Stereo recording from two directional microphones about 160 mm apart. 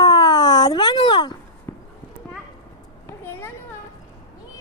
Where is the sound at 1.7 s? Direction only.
15° left (ahead or behind).